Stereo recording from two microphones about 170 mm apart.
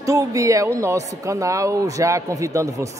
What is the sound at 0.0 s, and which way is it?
A man's voice, 20° right (ahead or behind).